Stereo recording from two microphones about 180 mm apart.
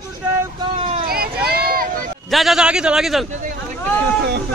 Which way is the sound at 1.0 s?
55° right (ahead or behind).